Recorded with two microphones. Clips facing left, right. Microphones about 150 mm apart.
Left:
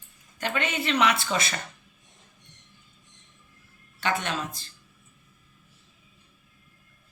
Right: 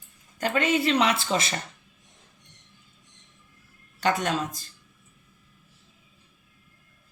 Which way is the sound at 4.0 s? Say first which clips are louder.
Right 3 dB; 40° right (ahead or behind).